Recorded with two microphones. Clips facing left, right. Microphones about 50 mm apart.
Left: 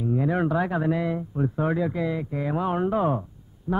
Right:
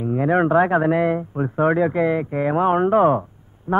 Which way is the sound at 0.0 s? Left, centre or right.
Right.